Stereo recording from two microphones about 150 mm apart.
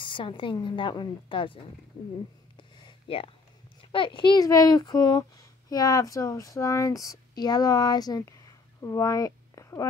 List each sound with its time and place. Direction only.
0.0 s a woman's voice: 35° left (ahead or behind)
2.5 s a sound: 35° left (ahead or behind)
3.9 s speech: 35° left (ahead or behind)